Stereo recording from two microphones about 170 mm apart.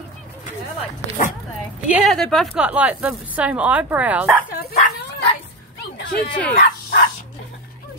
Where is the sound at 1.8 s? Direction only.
10° right (ahead or behind).